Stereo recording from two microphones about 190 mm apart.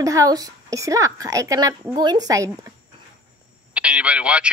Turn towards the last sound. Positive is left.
turn(degrees=-5)  # may be behind; listen again after turning